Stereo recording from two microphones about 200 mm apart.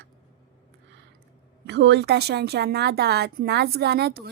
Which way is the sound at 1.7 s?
60° right (ahead or behind).